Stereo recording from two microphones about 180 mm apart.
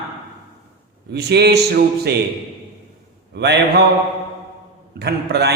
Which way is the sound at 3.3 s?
65° right (ahead or behind).